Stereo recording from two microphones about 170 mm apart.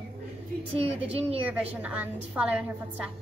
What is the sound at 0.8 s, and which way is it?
Speech, 35° right (ahead or behind).